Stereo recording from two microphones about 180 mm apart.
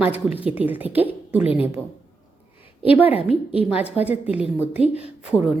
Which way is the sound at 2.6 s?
30° left (ahead or behind).